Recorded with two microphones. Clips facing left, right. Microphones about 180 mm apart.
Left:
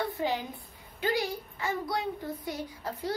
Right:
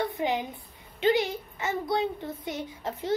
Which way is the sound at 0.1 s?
20° right (ahead or behind).